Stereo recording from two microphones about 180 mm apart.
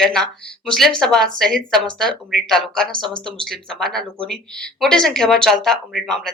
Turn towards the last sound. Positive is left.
turn(degrees=0)  # may be behind; listen again after turning